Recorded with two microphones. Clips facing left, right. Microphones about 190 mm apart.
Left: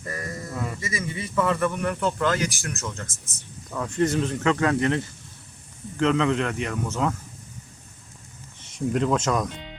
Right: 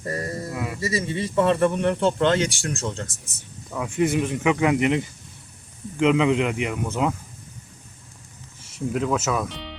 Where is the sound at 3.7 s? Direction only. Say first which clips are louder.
Right 1 dB; 10° right (ahead or behind).